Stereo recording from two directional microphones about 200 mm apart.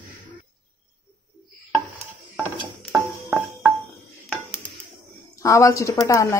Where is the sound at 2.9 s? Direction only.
5° right (ahead or behind).